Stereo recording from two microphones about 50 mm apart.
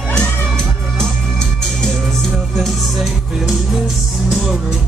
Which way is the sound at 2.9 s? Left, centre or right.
Centre.